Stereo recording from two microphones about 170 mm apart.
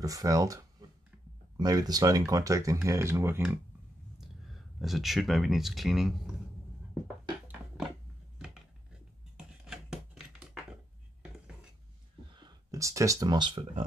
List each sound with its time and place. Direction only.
0.0 s speech: 20° right (ahead or behind)
4.5 s speech: centre (ahead or behind)
9.7 s a sound: 5° right (ahead or behind)
12.4 s speech: 20° right (ahead or behind)